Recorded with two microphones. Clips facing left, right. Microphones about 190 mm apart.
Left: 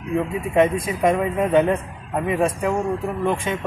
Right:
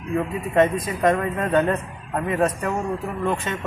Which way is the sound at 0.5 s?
10° left (ahead or behind).